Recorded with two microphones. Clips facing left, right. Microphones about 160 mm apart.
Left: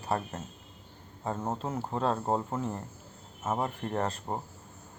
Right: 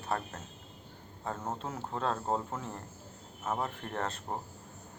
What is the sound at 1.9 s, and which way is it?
Speech, centre (ahead or behind).